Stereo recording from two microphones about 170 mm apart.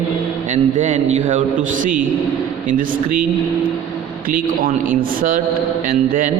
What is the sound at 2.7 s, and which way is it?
Speech, 55° right (ahead or behind).